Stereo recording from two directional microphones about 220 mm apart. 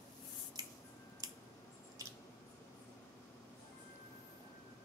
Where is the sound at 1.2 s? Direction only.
15° right (ahead or behind).